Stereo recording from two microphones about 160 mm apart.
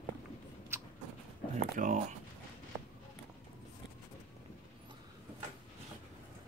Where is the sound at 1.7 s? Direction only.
55° right (ahead or behind).